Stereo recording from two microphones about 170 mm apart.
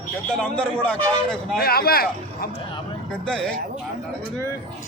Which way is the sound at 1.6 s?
65° left (ahead or behind).